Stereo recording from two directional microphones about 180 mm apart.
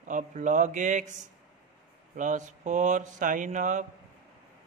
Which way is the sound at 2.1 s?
45° right (ahead or behind).